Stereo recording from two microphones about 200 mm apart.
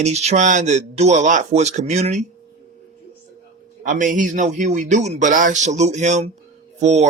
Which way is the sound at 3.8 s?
40° right (ahead or behind).